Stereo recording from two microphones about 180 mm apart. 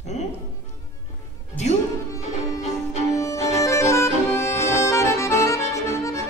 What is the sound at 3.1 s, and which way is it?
Music, 15° left (ahead or behind).